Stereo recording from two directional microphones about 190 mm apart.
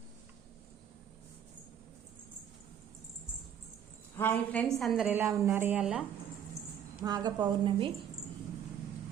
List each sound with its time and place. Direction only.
4.2 s a woman's voice: 10° left (ahead or behind)
7.0 s a woman's voice: 20° right (ahead or behind)